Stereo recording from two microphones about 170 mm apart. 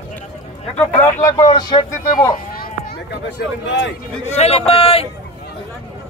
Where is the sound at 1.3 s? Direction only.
25° left (ahead or behind).